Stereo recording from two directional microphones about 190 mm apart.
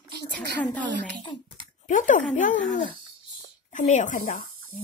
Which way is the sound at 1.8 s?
40° left (ahead or behind).